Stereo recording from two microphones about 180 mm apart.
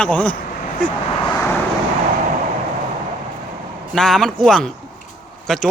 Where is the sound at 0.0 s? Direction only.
5° left (ahead or behind).